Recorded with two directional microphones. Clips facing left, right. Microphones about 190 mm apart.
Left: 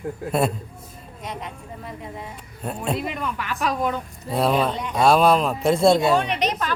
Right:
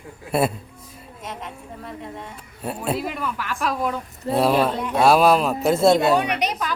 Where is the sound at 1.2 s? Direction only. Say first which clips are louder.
Left 1 dB; centre (ahead or behind).